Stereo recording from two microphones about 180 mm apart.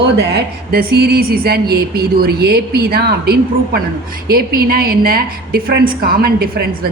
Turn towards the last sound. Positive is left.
turn(degrees=-60)  # may be behind; listen again after turning